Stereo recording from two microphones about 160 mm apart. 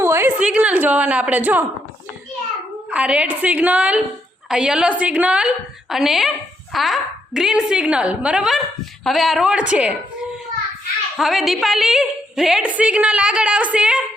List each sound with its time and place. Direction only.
0.0 s a woman's voice: 15° right (ahead or behind)
2.9 s a woman's voice: 5° right (ahead or behind)
11.2 s a woman's voice: centre (ahead or behind)